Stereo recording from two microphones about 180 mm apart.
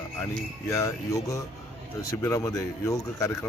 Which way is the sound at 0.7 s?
20° left (ahead or behind).